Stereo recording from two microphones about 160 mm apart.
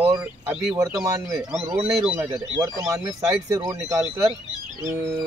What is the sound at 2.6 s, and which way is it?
Speech, 20° right (ahead or behind).